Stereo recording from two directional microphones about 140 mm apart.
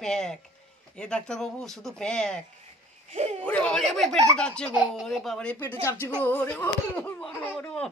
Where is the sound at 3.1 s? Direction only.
50° right (ahead or behind).